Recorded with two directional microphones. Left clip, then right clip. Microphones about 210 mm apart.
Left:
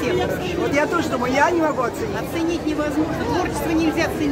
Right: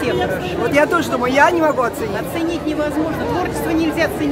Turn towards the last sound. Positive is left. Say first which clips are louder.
# right 3 dB
turn(degrees=-5)  # may be behind; listen again after turning